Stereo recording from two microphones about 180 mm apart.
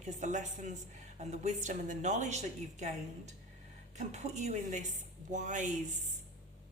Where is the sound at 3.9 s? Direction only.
40° right (ahead or behind).